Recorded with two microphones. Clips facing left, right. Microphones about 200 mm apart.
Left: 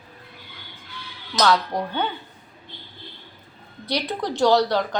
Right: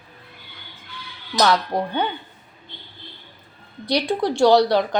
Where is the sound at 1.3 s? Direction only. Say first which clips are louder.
Right 1 dB; 15° right (ahead or behind).